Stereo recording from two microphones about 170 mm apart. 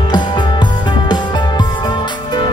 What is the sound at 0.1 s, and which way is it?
Music, 25° left (ahead or behind).